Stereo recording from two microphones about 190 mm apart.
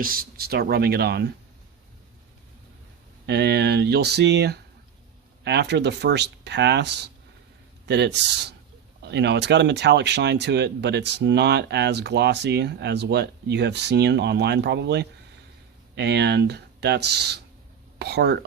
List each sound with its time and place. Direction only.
0.0 s speech: 50° right (ahead or behind)
3.2 s speech: 60° right (ahead or behind)